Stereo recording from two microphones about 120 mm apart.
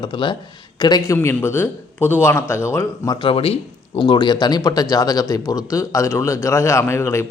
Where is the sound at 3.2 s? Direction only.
50° left (ahead or behind).